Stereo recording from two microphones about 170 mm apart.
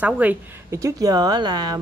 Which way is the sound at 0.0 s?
10° right (ahead or behind).